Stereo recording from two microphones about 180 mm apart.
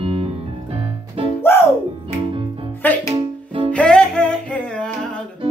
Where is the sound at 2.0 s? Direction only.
30° right (ahead or behind).